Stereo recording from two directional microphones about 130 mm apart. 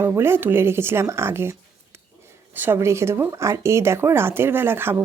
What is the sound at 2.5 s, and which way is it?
Speech, 15° right (ahead or behind).